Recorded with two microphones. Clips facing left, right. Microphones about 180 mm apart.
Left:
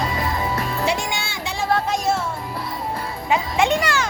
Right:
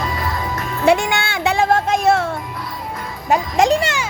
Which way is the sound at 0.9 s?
60° right (ahead or behind).